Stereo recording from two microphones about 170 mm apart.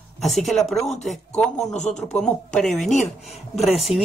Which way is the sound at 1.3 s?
40° left (ahead or behind).